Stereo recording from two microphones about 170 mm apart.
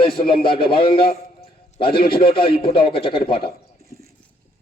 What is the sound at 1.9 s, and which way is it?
Speech, 65° left (ahead or behind).